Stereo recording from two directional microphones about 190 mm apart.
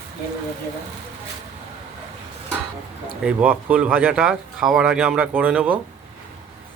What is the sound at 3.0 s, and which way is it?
Speech, 10° right (ahead or behind).